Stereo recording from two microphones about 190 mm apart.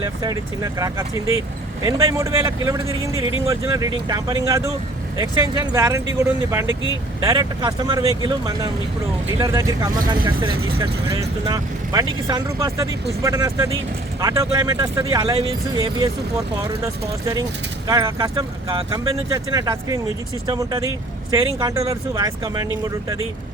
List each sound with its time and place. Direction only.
0.0 s speech: 20° right (ahead or behind)
15.4 s speech: 30° right (ahead or behind)
16.8 s speech: 15° right (ahead or behind)